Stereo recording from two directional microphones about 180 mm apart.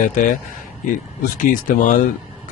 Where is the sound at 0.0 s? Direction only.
45° left (ahead or behind).